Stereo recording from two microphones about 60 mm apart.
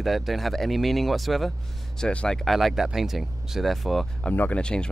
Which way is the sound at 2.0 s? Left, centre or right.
Centre.